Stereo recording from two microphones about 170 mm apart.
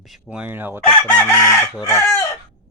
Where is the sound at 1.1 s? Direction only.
10° left (ahead or behind).